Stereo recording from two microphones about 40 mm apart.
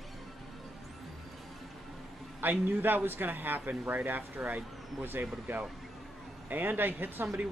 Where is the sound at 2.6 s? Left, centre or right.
Right.